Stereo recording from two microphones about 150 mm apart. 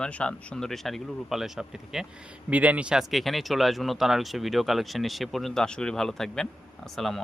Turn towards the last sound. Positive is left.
turn(degrees=0)  # may be behind; listen again after turning